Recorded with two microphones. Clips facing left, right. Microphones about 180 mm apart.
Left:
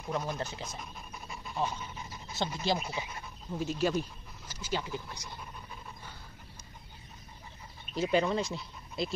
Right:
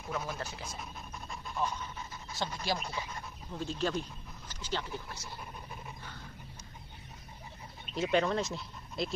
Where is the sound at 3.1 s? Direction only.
10° left (ahead or behind).